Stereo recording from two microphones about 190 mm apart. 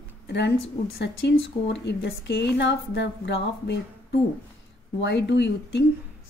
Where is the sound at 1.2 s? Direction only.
65° left (ahead or behind).